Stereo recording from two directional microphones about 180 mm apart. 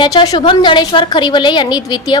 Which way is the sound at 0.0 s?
20° left (ahead or behind).